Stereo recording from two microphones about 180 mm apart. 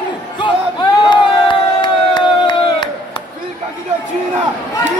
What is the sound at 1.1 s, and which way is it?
Crowd, 25° left (ahead or behind).